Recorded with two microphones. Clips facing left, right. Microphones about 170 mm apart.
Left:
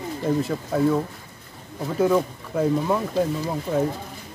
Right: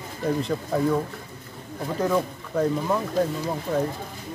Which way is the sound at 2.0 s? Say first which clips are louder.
Left 4 dB; 5° left (ahead or behind).